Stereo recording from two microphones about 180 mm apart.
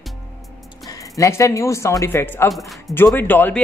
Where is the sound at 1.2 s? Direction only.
15° left (ahead or behind).